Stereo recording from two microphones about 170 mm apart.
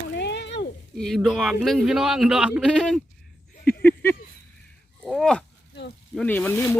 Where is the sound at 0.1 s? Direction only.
90° left.